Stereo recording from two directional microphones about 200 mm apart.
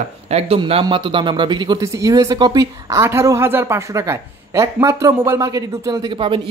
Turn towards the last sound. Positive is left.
turn(degrees=-25)  # may be behind; listen again after turning